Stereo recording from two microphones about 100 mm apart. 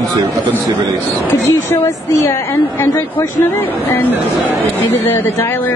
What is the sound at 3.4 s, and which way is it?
Speech, 20° left (ahead or behind).